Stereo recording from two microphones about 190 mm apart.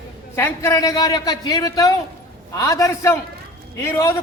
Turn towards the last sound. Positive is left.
turn(degrees=15)  # may be behind; listen again after turning